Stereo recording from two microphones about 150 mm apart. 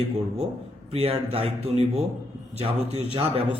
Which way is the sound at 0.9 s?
40° right (ahead or behind).